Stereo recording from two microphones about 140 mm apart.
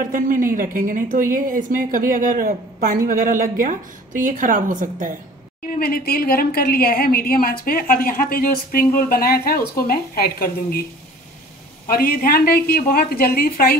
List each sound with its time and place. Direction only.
0.0 s a woman's voice: 75° right (ahead or behind)
5.8 s a woman's voice: 90° left
11.9 s a woman's voice: 90° left